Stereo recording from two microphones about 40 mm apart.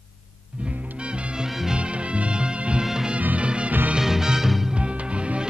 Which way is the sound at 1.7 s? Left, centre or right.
Right.